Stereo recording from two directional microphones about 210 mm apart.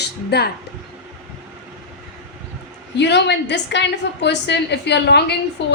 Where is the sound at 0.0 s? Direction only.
50° left (ahead or behind).